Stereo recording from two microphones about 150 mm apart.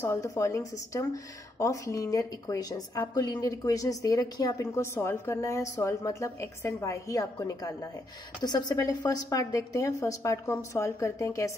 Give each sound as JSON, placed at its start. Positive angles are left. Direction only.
{"t": 0.0, "sound": "a woman's voice", "side_deg": 20}